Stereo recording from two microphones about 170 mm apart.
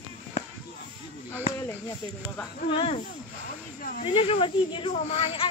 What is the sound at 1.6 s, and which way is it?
Speech, 15° left (ahead or behind).